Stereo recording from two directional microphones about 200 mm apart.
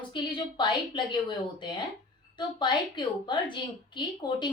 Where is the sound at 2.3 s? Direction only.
25° left (ahead or behind).